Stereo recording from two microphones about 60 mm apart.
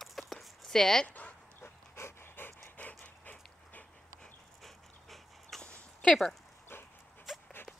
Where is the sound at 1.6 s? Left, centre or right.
Left.